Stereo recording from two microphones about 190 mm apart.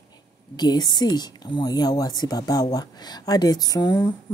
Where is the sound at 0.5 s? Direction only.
20° left (ahead or behind).